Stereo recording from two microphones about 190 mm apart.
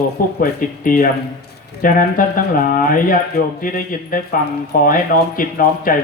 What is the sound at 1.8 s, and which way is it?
Speech, 45° left (ahead or behind).